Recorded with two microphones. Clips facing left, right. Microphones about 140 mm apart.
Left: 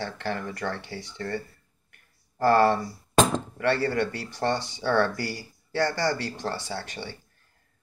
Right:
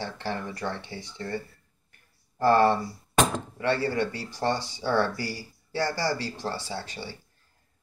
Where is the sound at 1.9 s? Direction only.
25° right (ahead or behind).